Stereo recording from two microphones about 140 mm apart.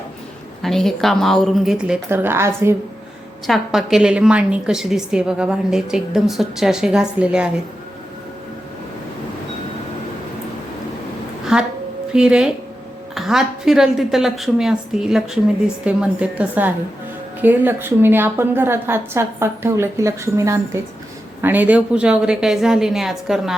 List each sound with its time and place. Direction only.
0.6 s a woman's voice: centre (ahead or behind)
2.0 s a woman's voice: 15° right (ahead or behind)
3.4 s a woman's voice: centre (ahead or behind)
11.5 s a woman's voice: 5° right (ahead or behind)